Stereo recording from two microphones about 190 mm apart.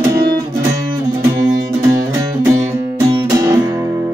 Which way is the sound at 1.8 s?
15° right (ahead or behind).